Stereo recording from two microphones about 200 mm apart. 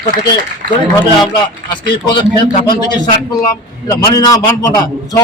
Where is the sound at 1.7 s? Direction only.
20° left (ahead or behind).